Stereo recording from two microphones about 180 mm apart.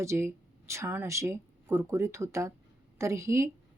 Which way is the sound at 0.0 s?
15° right (ahead or behind).